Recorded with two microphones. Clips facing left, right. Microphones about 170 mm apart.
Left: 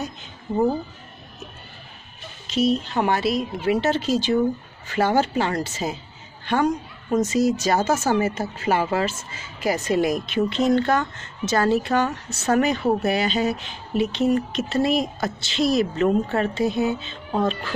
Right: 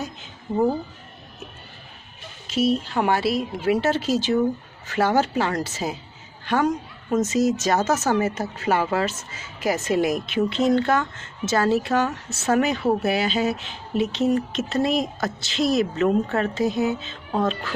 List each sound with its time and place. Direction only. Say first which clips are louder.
0.5 s speech: even; 10° left (ahead or behind)
2.4 s a woman's voice: left 1 dB; 5° right (ahead or behind)
7.8 s speech: left 1 dB; 30° left (ahead or behind)
8.1 s speech: left 1 dB; centre (ahead or behind)